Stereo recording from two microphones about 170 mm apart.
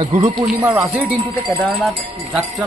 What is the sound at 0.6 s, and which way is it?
Speech, 20° right (ahead or behind).